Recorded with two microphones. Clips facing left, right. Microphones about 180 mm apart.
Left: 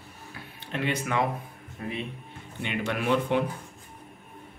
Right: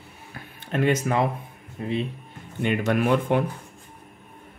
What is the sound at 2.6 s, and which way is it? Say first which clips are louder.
Speech: right 6 dB; 45° right (ahead or behind).